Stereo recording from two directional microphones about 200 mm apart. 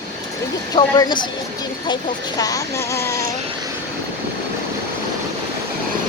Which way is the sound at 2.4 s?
15° left (ahead or behind).